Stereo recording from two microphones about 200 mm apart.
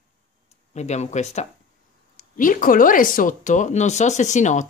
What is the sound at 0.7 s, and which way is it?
Speech, 35° left (ahead or behind).